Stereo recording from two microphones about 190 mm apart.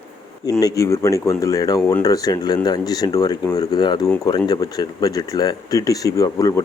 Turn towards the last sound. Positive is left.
turn(degrees=15)  # may be behind; listen again after turning